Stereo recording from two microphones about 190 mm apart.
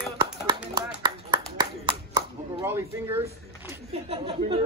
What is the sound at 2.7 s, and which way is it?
Speech, 15° right (ahead or behind).